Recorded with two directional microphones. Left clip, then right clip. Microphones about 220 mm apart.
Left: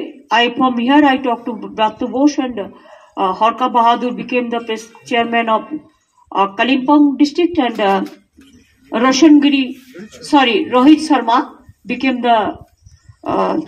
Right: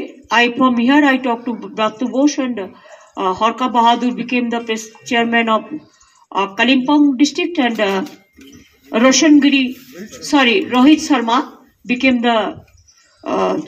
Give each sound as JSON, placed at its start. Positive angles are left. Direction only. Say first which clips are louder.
{"t": 0.3, "sound": "speech", "louder": "even", "side_deg": -30}